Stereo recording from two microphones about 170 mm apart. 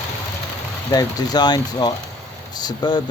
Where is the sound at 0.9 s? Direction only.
25° left (ahead or behind).